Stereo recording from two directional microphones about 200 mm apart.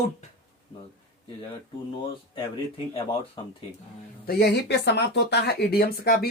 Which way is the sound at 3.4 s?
25° left (ahead or behind).